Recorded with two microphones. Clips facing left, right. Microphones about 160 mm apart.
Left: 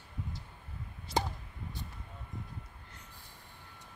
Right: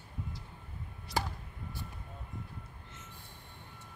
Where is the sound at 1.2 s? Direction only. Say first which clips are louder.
Left 2 dB; 20° left (ahead or behind).